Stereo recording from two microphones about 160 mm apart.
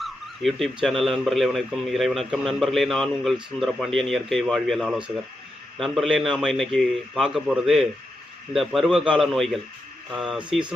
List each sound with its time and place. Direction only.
0.0 s speech: centre (ahead or behind)